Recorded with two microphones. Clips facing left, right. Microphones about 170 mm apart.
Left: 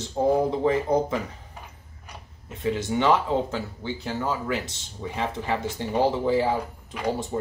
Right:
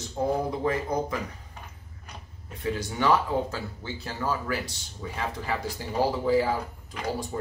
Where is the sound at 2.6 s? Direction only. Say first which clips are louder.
Left 4 dB; 25° left (ahead or behind).